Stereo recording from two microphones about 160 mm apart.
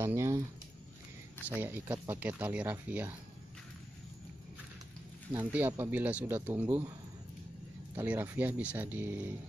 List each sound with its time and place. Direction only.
0.0 s a sound: 15° right (ahead or behind)
1.5 s speech: 10° right (ahead or behind)
5.3 s speech: 10° right (ahead or behind)
7.9 s speech: 10° right (ahead or behind)